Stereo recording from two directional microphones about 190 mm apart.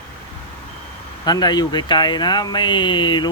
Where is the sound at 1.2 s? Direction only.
20° left (ahead or behind).